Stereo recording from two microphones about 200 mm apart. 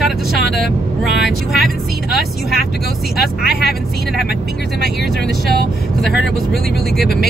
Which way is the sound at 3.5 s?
55° left (ahead or behind).